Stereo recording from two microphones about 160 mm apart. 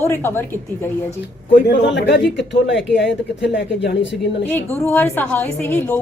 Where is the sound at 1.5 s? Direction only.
85° left.